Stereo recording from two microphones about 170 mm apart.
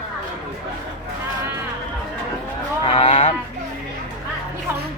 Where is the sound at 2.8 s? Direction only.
35° left (ahead or behind).